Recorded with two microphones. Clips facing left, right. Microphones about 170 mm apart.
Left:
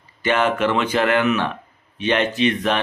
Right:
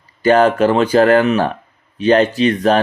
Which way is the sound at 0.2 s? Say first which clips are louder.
Right 8 dB; 35° right (ahead or behind).